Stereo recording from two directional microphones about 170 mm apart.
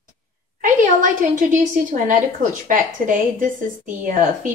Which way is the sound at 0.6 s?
50° right (ahead or behind).